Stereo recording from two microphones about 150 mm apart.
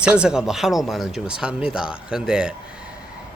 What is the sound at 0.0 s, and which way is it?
Speech, 5° right (ahead or behind).